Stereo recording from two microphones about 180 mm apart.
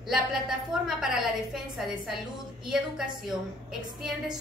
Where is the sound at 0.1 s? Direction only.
5° right (ahead or behind).